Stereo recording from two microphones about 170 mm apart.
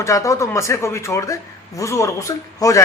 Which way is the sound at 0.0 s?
20° left (ahead or behind).